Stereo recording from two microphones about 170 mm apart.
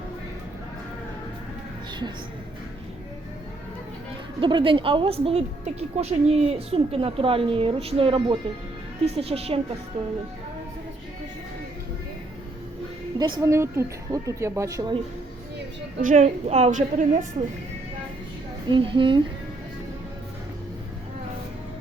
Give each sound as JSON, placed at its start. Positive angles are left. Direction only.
{"t": 4.4, "sound": "a woman's voice", "side_deg": -30}
{"t": 13.1, "sound": "speech", "side_deg": -25}
{"t": 15.5, "sound": "a woman's voice", "side_deg": -55}
{"t": 18.7, "sound": "a woman's voice", "side_deg": -30}